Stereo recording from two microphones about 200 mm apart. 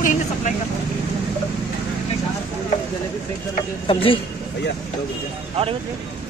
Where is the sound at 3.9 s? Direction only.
25° left (ahead or behind).